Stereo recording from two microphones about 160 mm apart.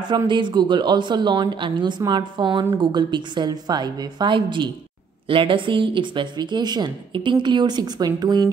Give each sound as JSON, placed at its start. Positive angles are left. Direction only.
{"t": 0.1, "sound": "speech", "side_deg": -30}